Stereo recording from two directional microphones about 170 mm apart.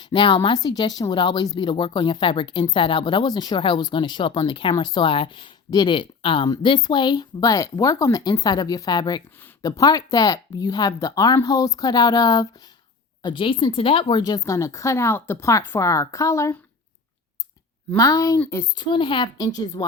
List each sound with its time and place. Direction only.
0.0 s speech: 25° left (ahead or behind)
17.9 s speech: 20° left (ahead or behind)
18.8 s speech: 30° left (ahead or behind)